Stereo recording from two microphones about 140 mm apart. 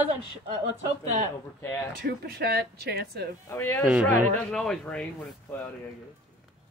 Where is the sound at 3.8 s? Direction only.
10° right (ahead or behind).